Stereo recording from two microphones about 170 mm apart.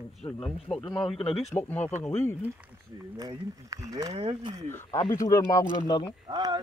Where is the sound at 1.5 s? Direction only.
10° left (ahead or behind).